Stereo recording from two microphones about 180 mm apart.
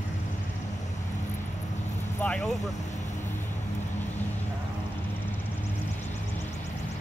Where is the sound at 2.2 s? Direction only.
5° left (ahead or behind).